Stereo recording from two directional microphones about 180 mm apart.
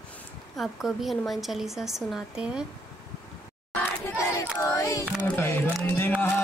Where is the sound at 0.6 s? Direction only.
Centre (ahead or behind).